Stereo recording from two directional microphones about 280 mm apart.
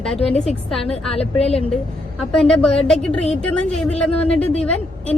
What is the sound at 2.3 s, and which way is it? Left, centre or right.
A woman's voice, centre.